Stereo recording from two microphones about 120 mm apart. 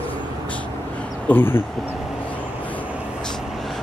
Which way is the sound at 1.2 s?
15° left (ahead or behind).